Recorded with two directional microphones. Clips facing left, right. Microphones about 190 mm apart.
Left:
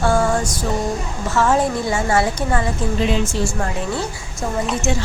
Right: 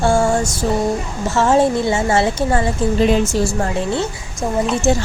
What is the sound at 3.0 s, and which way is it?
Speech, 40° right (ahead or behind).